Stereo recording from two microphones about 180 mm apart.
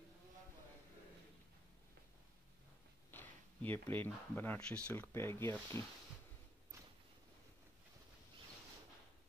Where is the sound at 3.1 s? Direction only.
10° left (ahead or behind).